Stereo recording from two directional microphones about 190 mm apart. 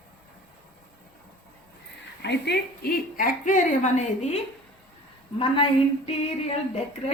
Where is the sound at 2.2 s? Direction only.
60° left (ahead or behind); by 4.4 s 35° left (ahead or behind).